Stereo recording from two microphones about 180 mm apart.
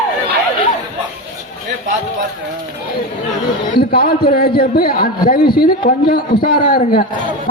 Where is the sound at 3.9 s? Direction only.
60° left (ahead or behind).